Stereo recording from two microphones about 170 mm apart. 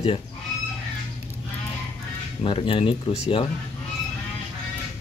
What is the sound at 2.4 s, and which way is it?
Speech, 30° left (ahead or behind).